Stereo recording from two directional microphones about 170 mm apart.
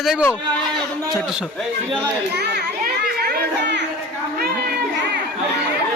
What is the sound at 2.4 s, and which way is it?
Children playing, 70° right (ahead or behind).